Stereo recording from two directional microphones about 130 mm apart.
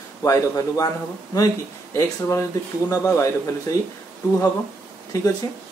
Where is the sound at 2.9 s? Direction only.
20° left (ahead or behind).